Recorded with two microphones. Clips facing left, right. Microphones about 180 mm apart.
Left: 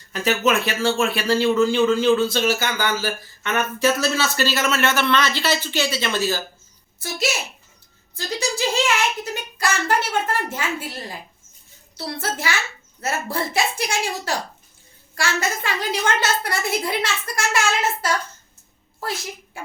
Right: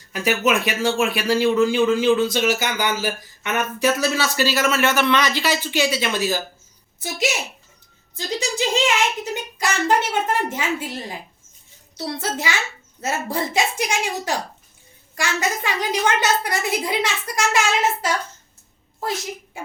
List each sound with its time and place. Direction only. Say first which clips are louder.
0.1 s speech: even; 10° right (ahead or behind)